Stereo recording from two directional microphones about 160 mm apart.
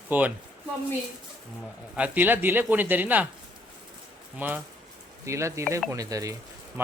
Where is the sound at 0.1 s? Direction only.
10° right (ahead or behind).